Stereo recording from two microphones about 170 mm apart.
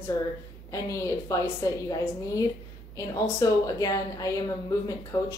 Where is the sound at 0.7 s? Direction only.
20° left (ahead or behind).